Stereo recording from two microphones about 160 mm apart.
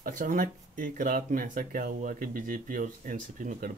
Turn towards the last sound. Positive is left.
turn(degrees=-60)  # may be behind; listen again after turning